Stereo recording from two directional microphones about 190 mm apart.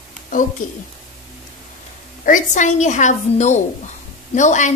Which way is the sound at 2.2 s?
40° left (ahead or behind).